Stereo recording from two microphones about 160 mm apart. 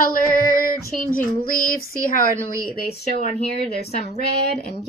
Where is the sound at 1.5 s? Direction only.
60° left (ahead or behind).